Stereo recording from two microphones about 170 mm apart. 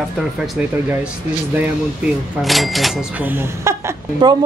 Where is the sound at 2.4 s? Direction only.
Centre (ahead or behind).